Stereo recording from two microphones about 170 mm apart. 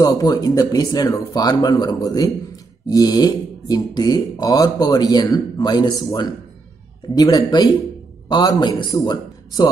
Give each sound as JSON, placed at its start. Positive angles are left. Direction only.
{"t": 0.0, "sound": "a man's voice", "side_deg": 20}